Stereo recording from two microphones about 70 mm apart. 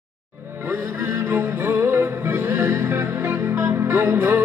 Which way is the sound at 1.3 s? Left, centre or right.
Right.